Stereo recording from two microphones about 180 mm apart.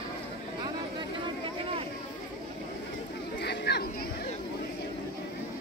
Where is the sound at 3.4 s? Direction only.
65° left (ahead or behind).